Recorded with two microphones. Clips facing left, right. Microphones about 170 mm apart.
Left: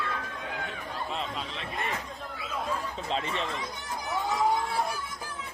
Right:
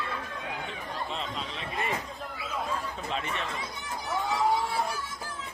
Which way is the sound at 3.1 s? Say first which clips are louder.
Left 3 dB; 30° left (ahead or behind).